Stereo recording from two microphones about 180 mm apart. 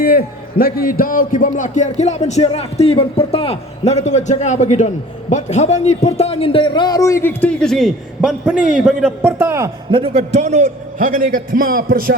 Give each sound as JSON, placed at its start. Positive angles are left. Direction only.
{"t": 0.0, "sound": "a man's voice", "side_deg": 55}
{"t": 9.9, "sound": "a man's voice", "side_deg": -30}